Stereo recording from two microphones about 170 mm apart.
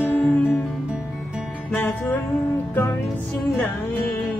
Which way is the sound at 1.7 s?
10° left (ahead or behind).